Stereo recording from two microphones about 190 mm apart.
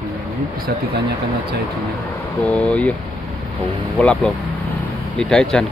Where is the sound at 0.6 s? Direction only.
55° right (ahead or behind).